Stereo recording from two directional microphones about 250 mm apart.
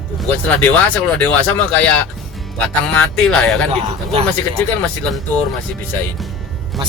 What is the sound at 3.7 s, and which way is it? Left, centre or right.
Speech, right.